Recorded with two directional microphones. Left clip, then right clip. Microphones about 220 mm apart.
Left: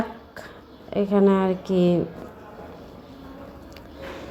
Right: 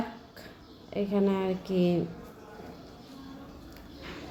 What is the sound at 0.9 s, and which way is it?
A woman's voice, 15° left (ahead or behind).